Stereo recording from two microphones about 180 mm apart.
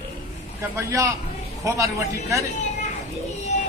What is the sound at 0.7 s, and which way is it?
Speech, 15° right (ahead or behind).